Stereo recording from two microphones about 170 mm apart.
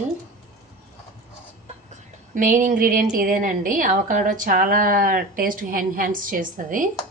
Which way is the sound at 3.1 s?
50° right (ahead or behind).